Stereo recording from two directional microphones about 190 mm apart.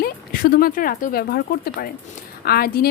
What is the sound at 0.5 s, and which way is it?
Speech, 50° left (ahead or behind).